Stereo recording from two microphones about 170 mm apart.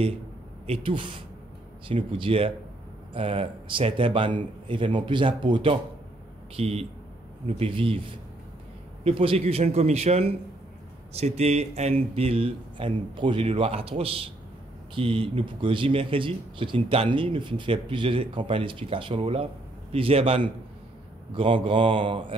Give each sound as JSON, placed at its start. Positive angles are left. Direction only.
{"t": 0.7, "sound": "speech", "side_deg": -30}